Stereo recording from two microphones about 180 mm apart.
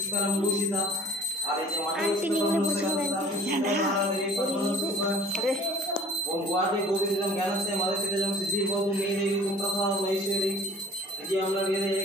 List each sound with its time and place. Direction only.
2.0 s speech: 5° right (ahead or behind)